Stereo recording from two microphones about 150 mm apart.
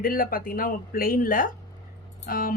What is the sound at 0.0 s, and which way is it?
A woman's voice, 75° left (ahead or behind).